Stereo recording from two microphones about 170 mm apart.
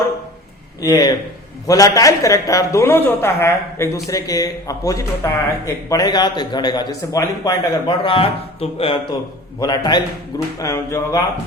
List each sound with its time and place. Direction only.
0.8 s a man's voice: 20° left (ahead or behind); by 9.0 s 35° left (ahead or behind)
9.6 s a man's voice: 25° left (ahead or behind)